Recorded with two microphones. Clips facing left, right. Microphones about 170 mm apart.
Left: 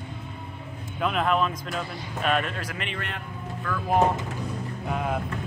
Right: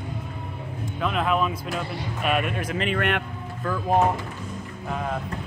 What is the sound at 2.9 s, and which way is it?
Speech, 70° right (ahead or behind).